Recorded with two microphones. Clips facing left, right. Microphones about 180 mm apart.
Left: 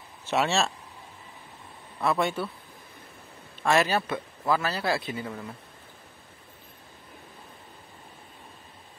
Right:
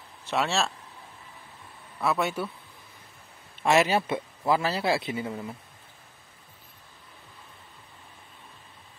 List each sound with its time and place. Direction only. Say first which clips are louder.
0.3 s speech: left 2 dB; centre (ahead or behind)
2.0 s speech: left 1 dB; 5° right (ahead or behind)
3.6 s a man's voice: right 1 dB; 25° right (ahead or behind)